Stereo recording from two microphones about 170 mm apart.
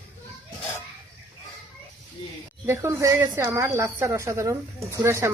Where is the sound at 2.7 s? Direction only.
15° right (ahead or behind).